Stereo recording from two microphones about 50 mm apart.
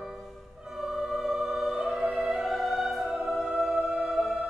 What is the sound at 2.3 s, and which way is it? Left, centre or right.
Music, centre.